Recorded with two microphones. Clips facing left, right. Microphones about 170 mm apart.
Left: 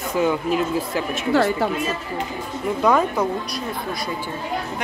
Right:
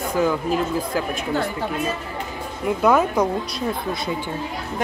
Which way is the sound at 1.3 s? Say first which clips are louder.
Left 6 dB; 90° left.